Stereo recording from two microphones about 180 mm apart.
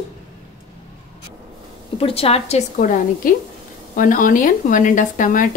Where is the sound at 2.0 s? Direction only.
30° left (ahead or behind).